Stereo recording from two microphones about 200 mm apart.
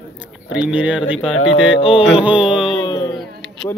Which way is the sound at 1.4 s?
70° left (ahead or behind).